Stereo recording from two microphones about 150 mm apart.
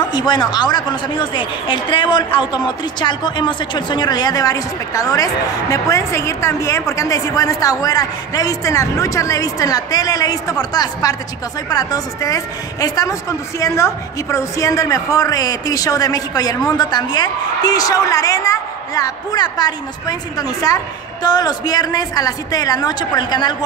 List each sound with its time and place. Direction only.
0.0 s a woman's voice: 30° left (ahead or behind)